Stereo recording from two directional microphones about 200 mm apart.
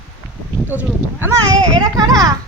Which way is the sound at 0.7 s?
10° right (ahead or behind).